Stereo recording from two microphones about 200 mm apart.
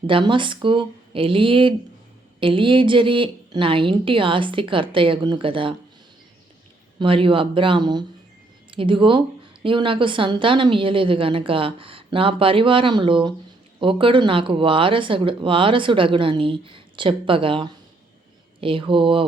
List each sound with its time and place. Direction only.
0.1 s speech: 25° right (ahead or behind)
7.0 s speech: 25° right (ahead or behind)